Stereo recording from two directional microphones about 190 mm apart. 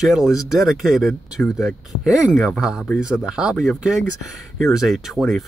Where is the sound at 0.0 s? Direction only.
Centre (ahead or behind).